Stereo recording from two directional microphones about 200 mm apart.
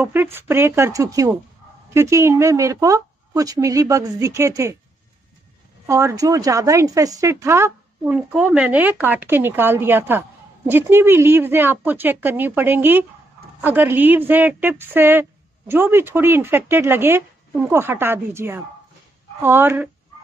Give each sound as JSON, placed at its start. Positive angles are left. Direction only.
{"t": 0.0, "sound": "a woman's voice", "side_deg": -10}
{"t": 5.9, "sound": "a woman's voice", "side_deg": -15}